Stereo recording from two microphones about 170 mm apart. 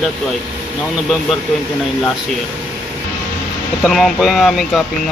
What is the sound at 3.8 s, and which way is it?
Speech, centre (ahead or behind).